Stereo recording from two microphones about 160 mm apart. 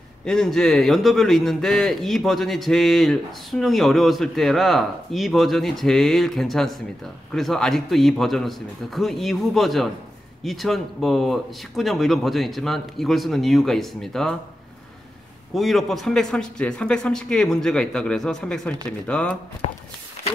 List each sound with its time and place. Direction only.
0.2 s a man's voice: 5° left (ahead or behind)
15.5 s a man's voice: centre (ahead or behind)
19.6 s walk: 40° left (ahead or behind)